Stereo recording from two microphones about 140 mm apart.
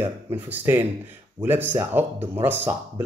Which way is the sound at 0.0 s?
15° right (ahead or behind).